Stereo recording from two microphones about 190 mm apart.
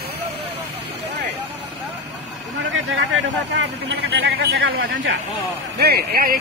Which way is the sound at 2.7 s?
75° right (ahead or behind).